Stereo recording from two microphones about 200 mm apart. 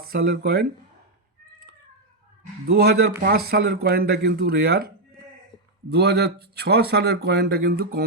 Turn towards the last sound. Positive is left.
turn(degrees=-55)  # may be behind; listen again after turning